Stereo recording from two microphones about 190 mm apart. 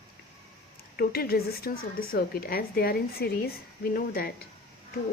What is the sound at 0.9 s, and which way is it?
Speech, 55° left (ahead or behind).